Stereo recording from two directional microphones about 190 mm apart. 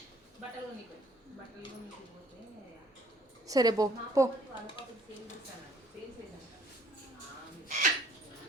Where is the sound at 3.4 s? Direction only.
20° right (ahead or behind).